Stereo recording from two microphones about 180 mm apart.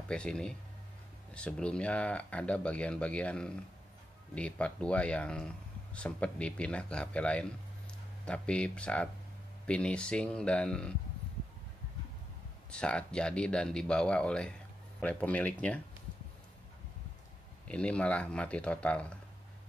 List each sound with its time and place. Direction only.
0.1 s speech: 5° left (ahead or behind)
12.7 s speech: 5° left (ahead or behind)
17.6 s speech: 5° left (ahead or behind)